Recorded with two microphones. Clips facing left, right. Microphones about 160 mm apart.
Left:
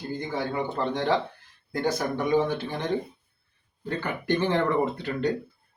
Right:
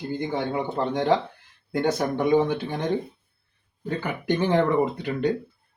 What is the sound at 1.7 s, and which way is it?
Speech, 20° right (ahead or behind).